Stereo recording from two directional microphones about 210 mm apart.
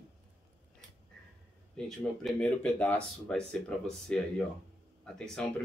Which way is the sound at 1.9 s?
5° left (ahead or behind).